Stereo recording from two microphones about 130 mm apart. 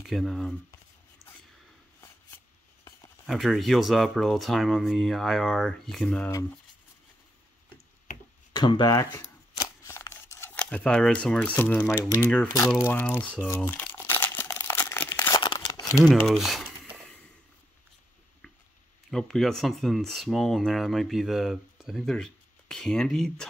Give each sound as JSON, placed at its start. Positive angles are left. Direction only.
{"t": 0.0, "sound": "speech", "side_deg": 0}
{"t": 2.0, "sound": "a sound", "side_deg": 20}
{"t": 3.3, "sound": "speech", "side_deg": 0}
{"t": 8.5, "sound": "speech", "side_deg": 35}
{"t": 9.8, "sound": "speech", "side_deg": 20}
{"t": 12.2, "sound": "speech", "side_deg": 10}
{"t": 12.5, "sound": "speech", "side_deg": 25}
{"t": 13.7, "sound": "crumpling", "side_deg": 15}
{"t": 16.0, "sound": "speech", "side_deg": 0}
{"t": 16.6, "sound": "a sound", "side_deg": -10}
{"t": 19.0, "sound": "speech", "side_deg": 5}